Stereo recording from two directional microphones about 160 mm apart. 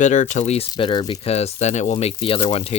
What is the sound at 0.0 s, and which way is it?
Speech, 50° left (ahead or behind).